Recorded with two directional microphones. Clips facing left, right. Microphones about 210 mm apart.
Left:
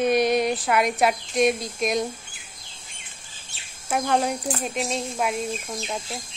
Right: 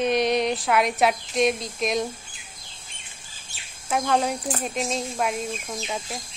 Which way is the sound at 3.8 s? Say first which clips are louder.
Even; centre (ahead or behind).